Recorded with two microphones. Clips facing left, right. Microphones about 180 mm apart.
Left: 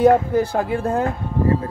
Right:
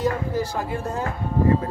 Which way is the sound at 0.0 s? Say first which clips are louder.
Left 9 dB; 55° left (ahead or behind).